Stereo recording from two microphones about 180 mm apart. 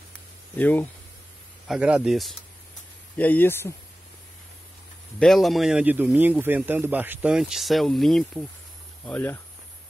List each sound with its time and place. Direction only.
0.6 s speech: 10° left (ahead or behind)
1.7 s speech: 5° right (ahead or behind)
3.2 s speech: 10° left (ahead or behind)
5.2 s speech: centre (ahead or behind)